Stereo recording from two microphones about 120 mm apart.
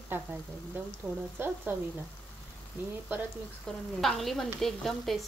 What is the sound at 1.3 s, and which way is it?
Speech, 20° right (ahead or behind).